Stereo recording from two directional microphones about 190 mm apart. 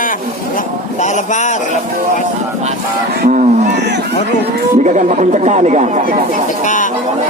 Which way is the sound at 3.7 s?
65° right (ahead or behind).